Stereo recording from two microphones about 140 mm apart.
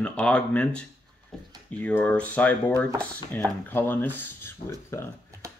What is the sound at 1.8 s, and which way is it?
Speech, 10° left (ahead or behind).